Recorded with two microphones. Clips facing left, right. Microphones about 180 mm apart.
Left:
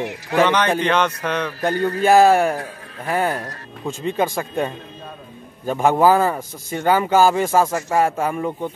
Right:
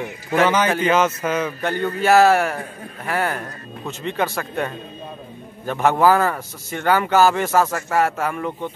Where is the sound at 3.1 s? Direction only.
15° left (ahead or behind).